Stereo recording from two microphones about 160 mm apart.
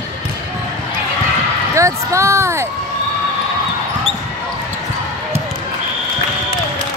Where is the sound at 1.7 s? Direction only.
20° right (ahead or behind).